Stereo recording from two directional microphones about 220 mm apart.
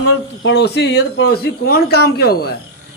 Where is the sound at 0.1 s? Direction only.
55° left (ahead or behind).